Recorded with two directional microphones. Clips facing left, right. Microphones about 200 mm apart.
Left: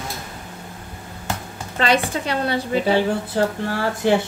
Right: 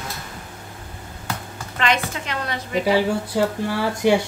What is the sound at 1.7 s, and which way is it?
A woman's voice, 35° left (ahead or behind).